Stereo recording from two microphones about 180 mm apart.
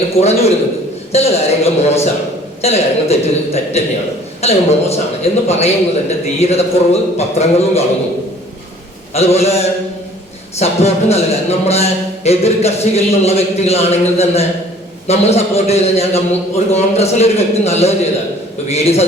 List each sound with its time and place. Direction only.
0.2 s speech: 35° left (ahead or behind)
9.1 s speech: 35° left (ahead or behind)
10.6 s speech: 35° left (ahead or behind)